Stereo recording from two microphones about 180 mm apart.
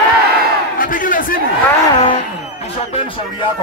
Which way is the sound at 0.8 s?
50° left (ahead or behind).